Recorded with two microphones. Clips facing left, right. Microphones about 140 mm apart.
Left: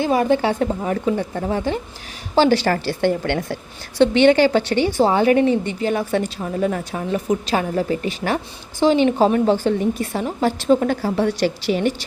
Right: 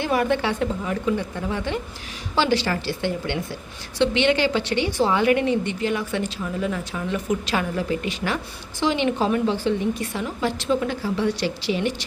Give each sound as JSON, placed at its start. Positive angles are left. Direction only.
{"t": 0.0, "sound": "a woman's voice", "side_deg": 30}